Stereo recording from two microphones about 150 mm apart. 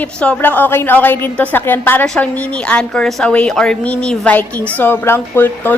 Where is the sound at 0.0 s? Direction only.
10° left (ahead or behind).